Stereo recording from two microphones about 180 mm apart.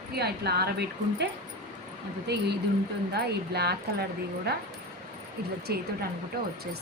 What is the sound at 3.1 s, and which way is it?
Speech, 65° right (ahead or behind).